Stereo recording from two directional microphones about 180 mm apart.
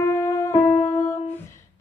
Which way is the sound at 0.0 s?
15° left (ahead or behind).